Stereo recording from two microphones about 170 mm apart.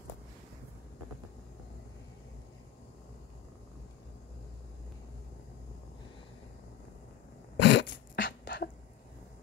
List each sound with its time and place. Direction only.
7.5 s dog: 90° left